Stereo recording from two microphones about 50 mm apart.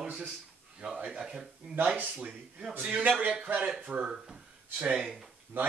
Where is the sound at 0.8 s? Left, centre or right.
Right.